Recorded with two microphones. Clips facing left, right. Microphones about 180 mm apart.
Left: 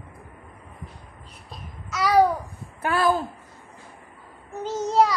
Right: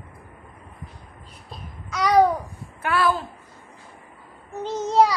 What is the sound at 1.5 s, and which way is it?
Babbling, 5° left (ahead or behind).